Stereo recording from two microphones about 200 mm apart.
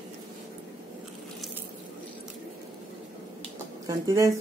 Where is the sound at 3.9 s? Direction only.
15° right (ahead or behind).